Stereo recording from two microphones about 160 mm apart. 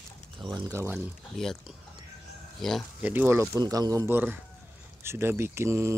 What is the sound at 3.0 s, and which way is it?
A man's voice, 10° right (ahead or behind).